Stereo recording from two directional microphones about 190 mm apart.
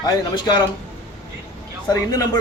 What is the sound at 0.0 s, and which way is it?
Speech, 25° left (ahead or behind).